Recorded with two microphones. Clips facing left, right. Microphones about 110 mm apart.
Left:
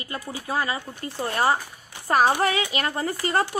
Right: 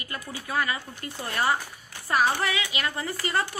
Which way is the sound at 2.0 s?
45° left (ahead or behind).